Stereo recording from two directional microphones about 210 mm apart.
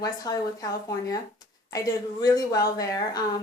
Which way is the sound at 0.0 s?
15° left (ahead or behind).